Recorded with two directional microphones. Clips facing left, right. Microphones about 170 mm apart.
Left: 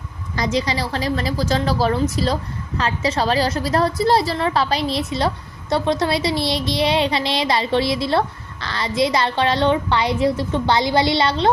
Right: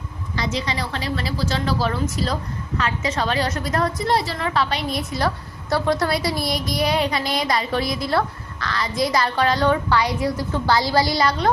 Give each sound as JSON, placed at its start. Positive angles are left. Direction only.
{"t": 0.3, "sound": "a woman's voice", "side_deg": 35}